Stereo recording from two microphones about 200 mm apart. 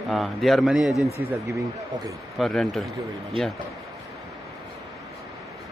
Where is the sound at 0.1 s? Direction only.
Centre (ahead or behind).